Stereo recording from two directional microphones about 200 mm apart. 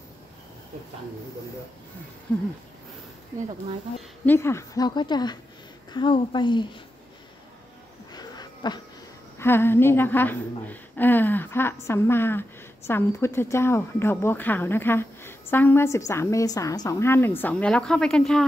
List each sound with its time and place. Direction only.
4.3 s a woman's voice: 15° left (ahead or behind)
8.1 s a sound: 20° left (ahead or behind)
9.4 s a woman's voice: 10° left (ahead or behind)